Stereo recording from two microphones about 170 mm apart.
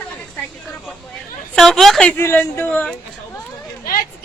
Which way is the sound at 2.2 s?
15° left (ahead or behind).